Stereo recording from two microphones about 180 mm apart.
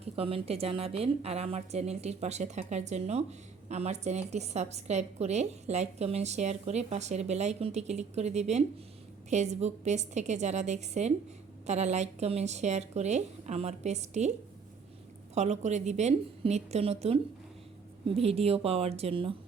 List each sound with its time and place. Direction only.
0.0 s a woman's voice: 30° right (ahead or behind)
15.4 s a woman's voice: 40° right (ahead or behind)